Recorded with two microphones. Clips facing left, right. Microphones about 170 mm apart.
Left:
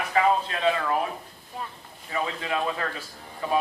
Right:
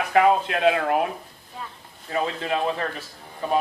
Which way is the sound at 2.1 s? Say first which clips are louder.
Right 4 dB; 50° right (ahead or behind).